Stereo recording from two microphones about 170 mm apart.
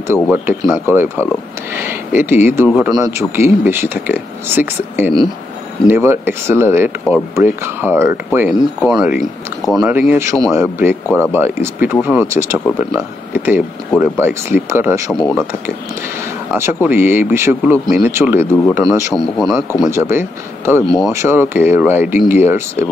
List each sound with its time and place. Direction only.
0.1 s speech: 15° right (ahead or behind)
16.4 s speech: 10° right (ahead or behind)
19.1 s speech: centre (ahead or behind)
19.9 s speech: 15° right (ahead or behind)